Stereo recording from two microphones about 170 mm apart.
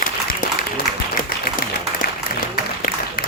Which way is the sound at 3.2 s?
55° left (ahead or behind).